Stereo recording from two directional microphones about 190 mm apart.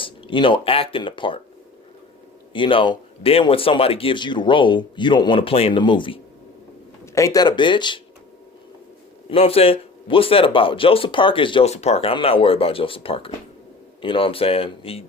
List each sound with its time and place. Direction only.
0.0 s speech: 25° left (ahead or behind)
2.5 s a man's voice: 25° left (ahead or behind)
7.0 s a man's voice: 15° left (ahead or behind)
9.3 s a man's voice: 30° left (ahead or behind)